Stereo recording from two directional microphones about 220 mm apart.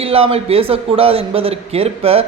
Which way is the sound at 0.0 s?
25° right (ahead or behind).